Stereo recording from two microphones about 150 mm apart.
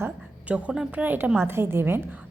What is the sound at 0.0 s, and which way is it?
A woman's voice, 10° right (ahead or behind).